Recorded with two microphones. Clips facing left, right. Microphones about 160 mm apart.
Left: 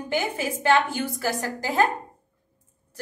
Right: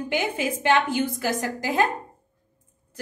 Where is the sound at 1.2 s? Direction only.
20° right (ahead or behind).